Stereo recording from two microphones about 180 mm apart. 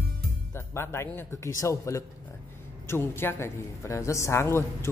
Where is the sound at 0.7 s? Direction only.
15° left (ahead or behind).